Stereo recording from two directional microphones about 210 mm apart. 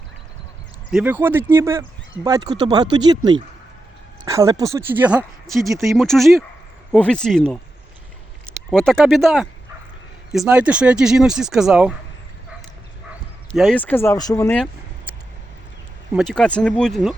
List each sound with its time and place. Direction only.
0.9 s speech: 5° right (ahead or behind)
13.5 s speech: 5° left (ahead or behind)
16.1 s speech: centre (ahead or behind)